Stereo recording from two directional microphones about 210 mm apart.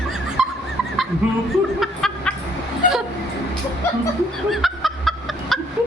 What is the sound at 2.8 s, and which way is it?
Vehicle, 40° left (ahead or behind).